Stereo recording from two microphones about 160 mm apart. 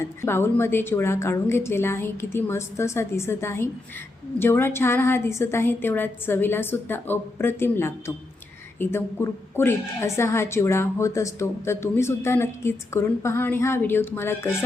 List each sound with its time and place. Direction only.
0.2 s a woman's voice: 15° left (ahead or behind)